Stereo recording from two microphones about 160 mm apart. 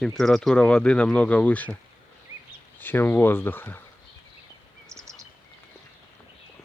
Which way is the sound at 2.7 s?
15° left (ahead or behind).